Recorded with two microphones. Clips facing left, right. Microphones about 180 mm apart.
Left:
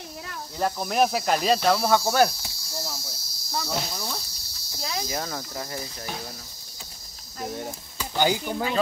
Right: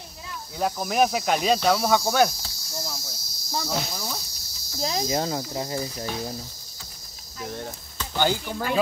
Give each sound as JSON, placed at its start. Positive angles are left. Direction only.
{"t": 0.6, "sound": "speech", "side_deg": -5}
{"t": 2.8, "sound": "insect", "side_deg": 5}
{"t": 3.6, "sound": "speech", "side_deg": 0}
{"t": 4.8, "sound": "cricket", "side_deg": -30}
{"t": 7.4, "sound": "speech", "side_deg": 10}